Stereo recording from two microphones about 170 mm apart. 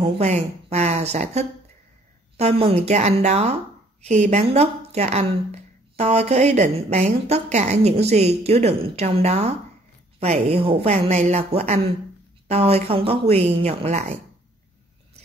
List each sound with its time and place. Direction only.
0.0 s a woman's voice: 40° right (ahead or behind)